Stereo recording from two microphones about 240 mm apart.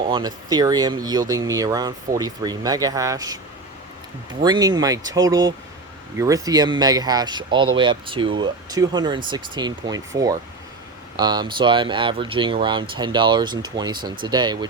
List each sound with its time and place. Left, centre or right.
0.0 s speech: centre